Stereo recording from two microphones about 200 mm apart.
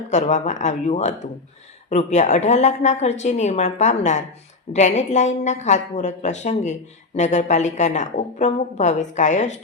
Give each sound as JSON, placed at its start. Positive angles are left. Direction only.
{"t": 0.1, "sound": "a woman's voice", "side_deg": 35}